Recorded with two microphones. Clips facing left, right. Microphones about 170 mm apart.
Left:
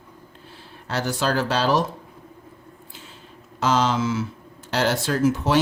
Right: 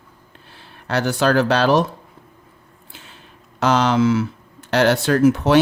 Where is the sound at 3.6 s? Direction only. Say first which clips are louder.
Right 5 dB; 65° right (ahead or behind).